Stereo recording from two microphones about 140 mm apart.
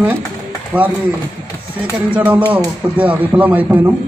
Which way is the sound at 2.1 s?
10° right (ahead or behind).